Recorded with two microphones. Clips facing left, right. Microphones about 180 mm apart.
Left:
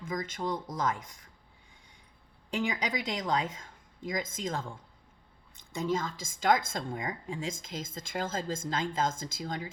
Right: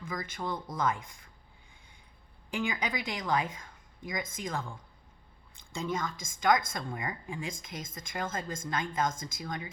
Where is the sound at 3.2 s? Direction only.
20° left (ahead or behind).